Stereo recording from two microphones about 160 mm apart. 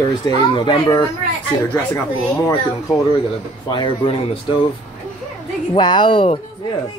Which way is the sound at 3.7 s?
30° left (ahead or behind).